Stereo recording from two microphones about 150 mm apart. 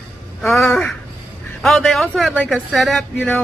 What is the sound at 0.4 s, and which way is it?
Speech, centre (ahead or behind).